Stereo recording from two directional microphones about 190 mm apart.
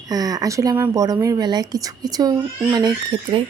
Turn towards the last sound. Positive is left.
turn(degrees=-25)  # may be behind; listen again after turning